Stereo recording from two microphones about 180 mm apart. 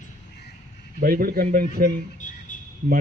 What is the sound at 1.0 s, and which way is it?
Speech, 55° right (ahead or behind).